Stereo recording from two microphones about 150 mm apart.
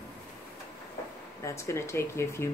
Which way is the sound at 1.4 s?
20° left (ahead or behind).